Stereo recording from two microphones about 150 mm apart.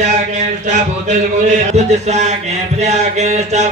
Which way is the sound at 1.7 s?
50° right (ahead or behind).